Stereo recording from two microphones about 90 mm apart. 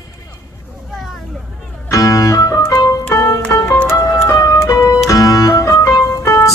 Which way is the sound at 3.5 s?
35° left (ahead or behind).